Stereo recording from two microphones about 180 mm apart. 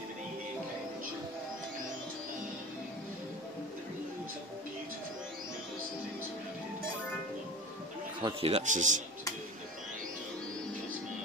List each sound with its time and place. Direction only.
8.2 s speech: 30° right (ahead or behind)